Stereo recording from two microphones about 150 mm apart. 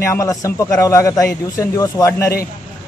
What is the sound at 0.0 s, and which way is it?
A man's voice, 20° left (ahead or behind).